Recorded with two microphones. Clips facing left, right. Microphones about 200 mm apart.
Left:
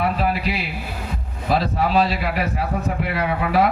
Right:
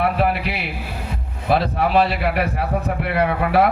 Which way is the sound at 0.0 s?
60° right (ahead or behind).